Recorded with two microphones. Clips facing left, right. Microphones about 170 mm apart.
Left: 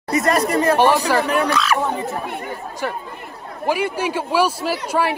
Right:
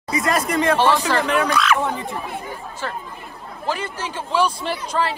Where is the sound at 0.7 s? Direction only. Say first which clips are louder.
Left 4 dB; 15° left (ahead or behind).